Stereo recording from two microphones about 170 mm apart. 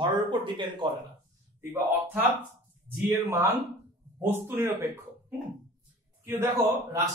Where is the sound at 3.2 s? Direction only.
15° right (ahead or behind).